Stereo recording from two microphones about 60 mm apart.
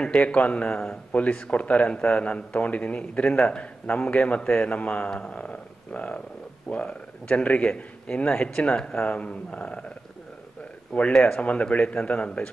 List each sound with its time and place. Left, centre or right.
0.0 s speech: centre
0.7 s speech: centre
1.1 s speech: left
10.9 s speech: left
11.1 s speech: centre
11.4 s speech: left